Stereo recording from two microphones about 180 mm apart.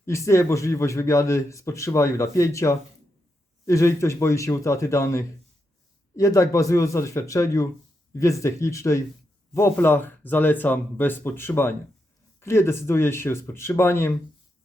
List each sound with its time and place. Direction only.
0.0 s a man's voice: 15° left (ahead or behind)